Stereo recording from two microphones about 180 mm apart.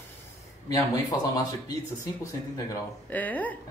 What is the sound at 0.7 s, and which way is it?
A woman's voice, 20° left (ahead or behind).